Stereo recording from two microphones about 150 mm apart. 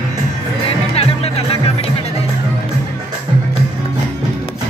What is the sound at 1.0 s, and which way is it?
Music, 40° left (ahead or behind).